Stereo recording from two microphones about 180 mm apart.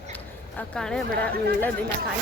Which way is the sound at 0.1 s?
5° left (ahead or behind).